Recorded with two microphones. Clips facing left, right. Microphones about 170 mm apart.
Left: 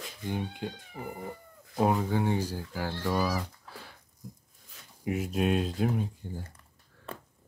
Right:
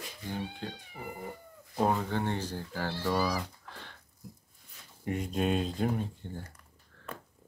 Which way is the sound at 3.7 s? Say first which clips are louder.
Left 1 dB; 10° left (ahead or behind).